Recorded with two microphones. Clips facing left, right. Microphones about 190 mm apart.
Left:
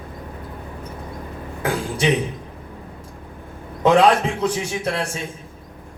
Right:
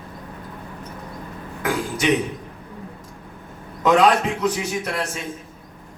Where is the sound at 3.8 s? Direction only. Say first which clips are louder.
Left 2 dB; 30° left (ahead or behind).